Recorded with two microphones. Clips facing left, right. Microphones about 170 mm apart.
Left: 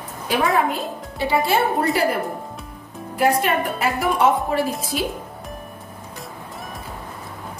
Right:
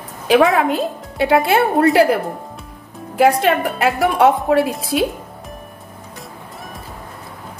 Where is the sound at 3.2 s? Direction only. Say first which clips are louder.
Right 5 dB; 85° right.